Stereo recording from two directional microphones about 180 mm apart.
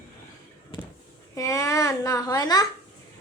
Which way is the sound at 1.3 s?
15° left (ahead or behind).